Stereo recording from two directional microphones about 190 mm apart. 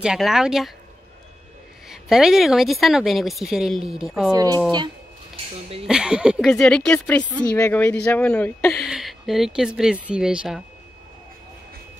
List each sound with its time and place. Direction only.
0.0 s speech: 5° right (ahead or behind)
1.9 s speech: centre (ahead or behind)
4.3 s speech: 20° right (ahead or behind)
5.3 s speech: 30° right (ahead or behind)
5.9 s speech: 5° right (ahead or behind)
8.8 s speech: centre (ahead or behind)